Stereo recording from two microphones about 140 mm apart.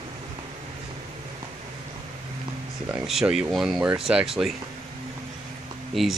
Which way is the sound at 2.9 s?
5° right (ahead or behind).